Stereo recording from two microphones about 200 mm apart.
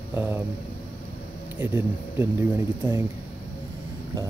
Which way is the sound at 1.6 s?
10° right (ahead or behind).